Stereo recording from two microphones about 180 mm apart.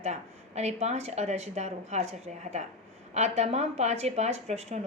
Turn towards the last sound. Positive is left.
turn(degrees=-40)  # may be behind; listen again after turning